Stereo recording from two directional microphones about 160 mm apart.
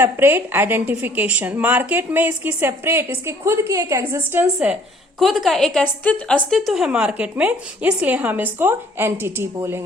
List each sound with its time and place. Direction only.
0.0 s a woman's voice: 15° right (ahead or behind)
5.2 s a woman's voice: centre (ahead or behind); by 9.8 s 15° right (ahead or behind)